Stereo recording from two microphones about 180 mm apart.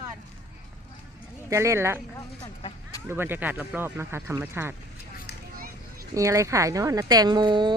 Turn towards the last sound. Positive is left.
turn(degrees=-25)  # may be behind; listen again after turning